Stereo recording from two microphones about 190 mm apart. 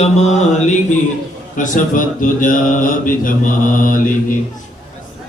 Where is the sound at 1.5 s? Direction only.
45° left (ahead or behind).